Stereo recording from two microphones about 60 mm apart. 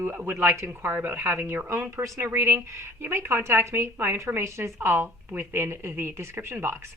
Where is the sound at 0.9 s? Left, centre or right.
Right.